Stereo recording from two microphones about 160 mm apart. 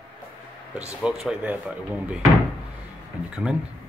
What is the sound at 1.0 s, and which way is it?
Speech, 5° right (ahead or behind).